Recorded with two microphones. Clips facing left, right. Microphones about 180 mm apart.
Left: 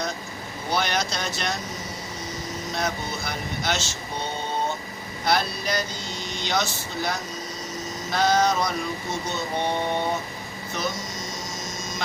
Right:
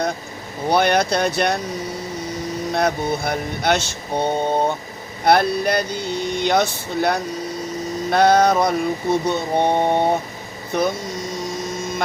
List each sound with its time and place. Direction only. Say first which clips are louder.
0.7 s speech: right 9 dB; 60° right (ahead or behind)
2.7 s a sound: right 9 dB; 60° right (ahead or behind)
10.7 s hum: right 9 dB; 60° right (ahead or behind)